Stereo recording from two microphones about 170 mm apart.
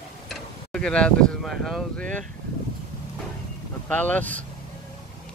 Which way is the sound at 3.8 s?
10° left (ahead or behind).